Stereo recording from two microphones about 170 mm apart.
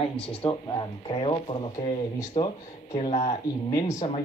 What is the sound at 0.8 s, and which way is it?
Speech, 30° left (ahead or behind).